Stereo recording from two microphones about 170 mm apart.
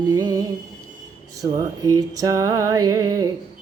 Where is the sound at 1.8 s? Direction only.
20° right (ahead or behind).